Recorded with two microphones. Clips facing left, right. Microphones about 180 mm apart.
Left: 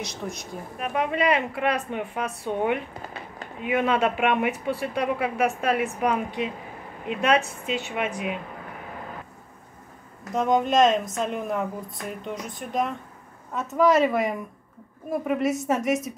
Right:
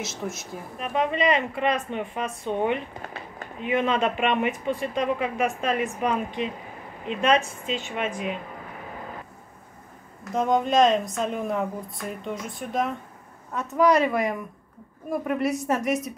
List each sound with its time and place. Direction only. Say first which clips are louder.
0.0 s a woman's voice: right 1 dB; 5° right (ahead or behind)
0.7 s a woman's voice: even; 10° left (ahead or behind)
7.6 s a woman's voice: left 1 dB; 10° left (ahead or behind)
10.3 s a woman's voice: even; centre (ahead or behind)